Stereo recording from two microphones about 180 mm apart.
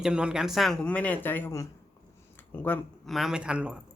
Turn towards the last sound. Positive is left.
turn(degrees=-5)  # may be behind; listen again after turning